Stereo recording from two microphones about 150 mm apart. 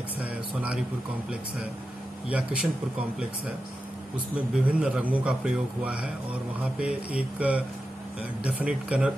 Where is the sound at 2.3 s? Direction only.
10° right (ahead or behind).